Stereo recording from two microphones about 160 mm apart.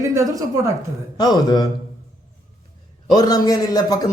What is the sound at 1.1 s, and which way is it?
Speech, 25° left (ahead or behind).